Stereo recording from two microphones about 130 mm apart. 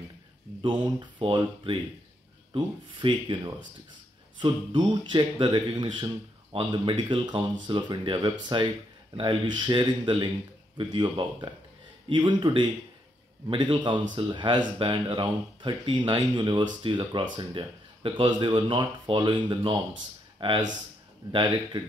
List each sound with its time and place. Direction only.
0.6 s speech: 40° right (ahead or behind)